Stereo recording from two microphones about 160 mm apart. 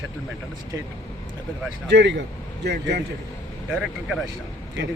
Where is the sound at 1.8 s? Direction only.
90° right.